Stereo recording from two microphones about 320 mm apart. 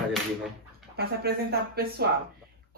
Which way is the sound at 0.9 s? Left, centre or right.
Right.